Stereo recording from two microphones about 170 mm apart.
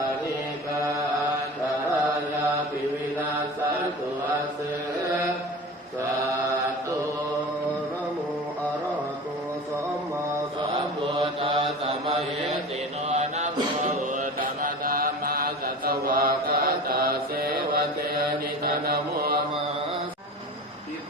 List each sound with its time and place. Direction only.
11.1 s mantra: 35° right (ahead or behind); by 19.4 s 65° right (ahead or behind)